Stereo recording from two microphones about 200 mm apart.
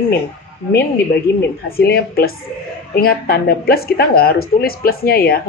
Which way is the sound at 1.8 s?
50° left (ahead or behind).